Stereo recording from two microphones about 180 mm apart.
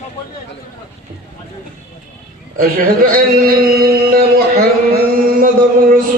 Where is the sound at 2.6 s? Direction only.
55° right (ahead or behind).